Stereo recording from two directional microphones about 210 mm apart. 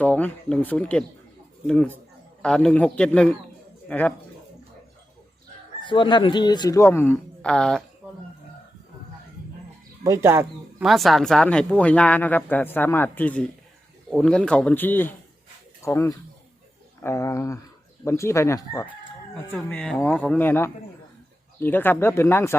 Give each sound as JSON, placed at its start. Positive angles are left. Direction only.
{"t": 0.0, "sound": "a man's voice", "side_deg": 5}
{"t": 5.8, "sound": "speech", "side_deg": 20}
{"t": 10.0, "sound": "speech", "side_deg": -15}
{"t": 10.8, "sound": "a man's voice", "side_deg": 0}